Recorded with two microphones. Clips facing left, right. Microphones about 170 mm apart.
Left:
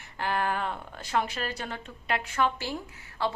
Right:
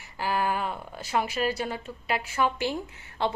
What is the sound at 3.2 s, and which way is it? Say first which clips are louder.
Speech: right 2 dB; 20° right (ahead or behind).